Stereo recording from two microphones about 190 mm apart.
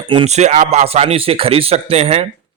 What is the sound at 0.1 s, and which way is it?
Speech, 30° right (ahead or behind).